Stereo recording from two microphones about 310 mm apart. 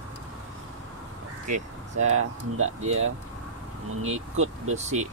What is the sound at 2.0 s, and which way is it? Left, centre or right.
Speech, right.